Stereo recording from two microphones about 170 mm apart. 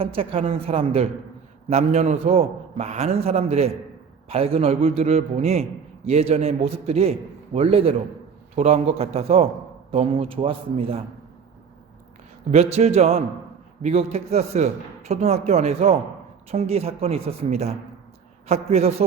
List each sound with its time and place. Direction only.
0.0 s a man's voice: 35° right (ahead or behind)
12.5 s a man's voice: 40° right (ahead or behind)